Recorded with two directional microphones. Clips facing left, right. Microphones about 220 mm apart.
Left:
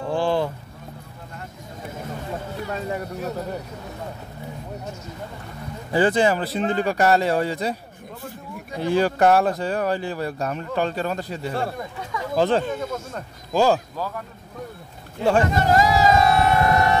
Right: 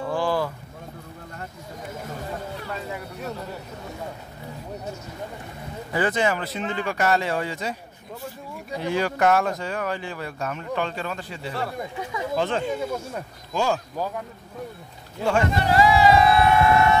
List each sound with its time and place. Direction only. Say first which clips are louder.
0.1 s a sound: left 3 dB; 25° left (ahead or behind)
2.7 s a sound: left 7 dB; 45° left (ahead or behind)
5.9 s speech: left 5 dB; 30° left (ahead or behind)
8.7 s speech: left 4 dB; 35° left (ahead or behind)
12.6 s speech: right 1 dB; 10° right (ahead or behind)
13.5 s speech: left 6 dB; 35° left (ahead or behind)
13.9 s speech: right 1 dB; 15° right (ahead or behind)
15.2 s vehicle: left 3 dB; 40° left (ahead or behind)